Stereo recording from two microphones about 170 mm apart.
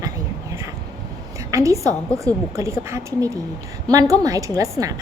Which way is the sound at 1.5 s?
20° right (ahead or behind).